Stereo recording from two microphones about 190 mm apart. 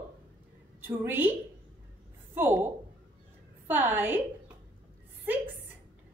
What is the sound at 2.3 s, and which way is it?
A woman's voice, 10° right (ahead or behind).